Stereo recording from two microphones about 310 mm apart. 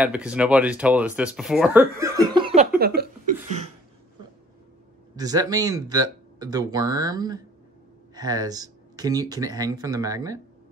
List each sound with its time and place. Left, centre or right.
0.0 s speech: centre
2.8 s a sound: right
5.1 s speech: centre